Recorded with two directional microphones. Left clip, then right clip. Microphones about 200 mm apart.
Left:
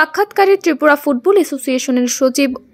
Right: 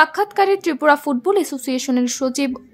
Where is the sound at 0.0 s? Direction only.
15° left (ahead or behind).